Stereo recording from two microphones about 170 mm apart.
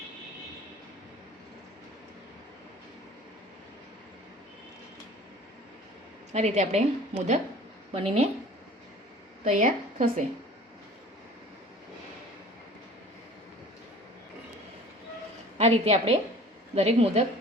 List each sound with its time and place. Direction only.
6.3 s a woman's voice: 40° right (ahead or behind)
9.4 s a woman's voice: 45° right (ahead or behind)
15.5 s a woman's voice: 40° right (ahead or behind)